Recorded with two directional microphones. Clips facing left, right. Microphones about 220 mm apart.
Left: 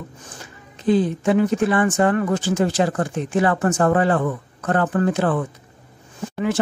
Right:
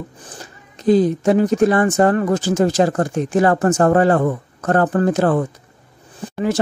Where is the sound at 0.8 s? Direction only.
40° right (ahead or behind).